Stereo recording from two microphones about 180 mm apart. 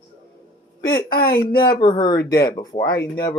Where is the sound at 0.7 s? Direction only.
25° left (ahead or behind).